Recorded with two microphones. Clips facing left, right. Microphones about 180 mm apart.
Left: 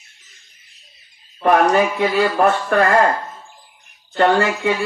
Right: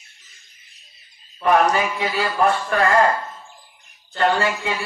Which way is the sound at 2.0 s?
50° left (ahead or behind).